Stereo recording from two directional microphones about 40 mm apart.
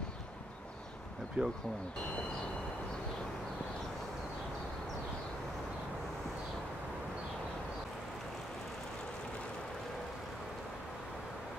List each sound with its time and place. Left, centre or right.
1.4 s speech: right